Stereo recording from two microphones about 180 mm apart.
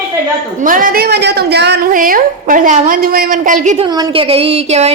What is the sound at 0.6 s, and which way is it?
A woman's voice, 50° right (ahead or behind).